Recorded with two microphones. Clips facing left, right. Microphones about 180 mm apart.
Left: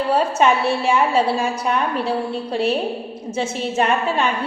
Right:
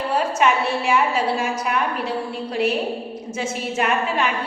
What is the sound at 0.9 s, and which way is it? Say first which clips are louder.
Speech: left 3 dB; 30° left (ahead or behind).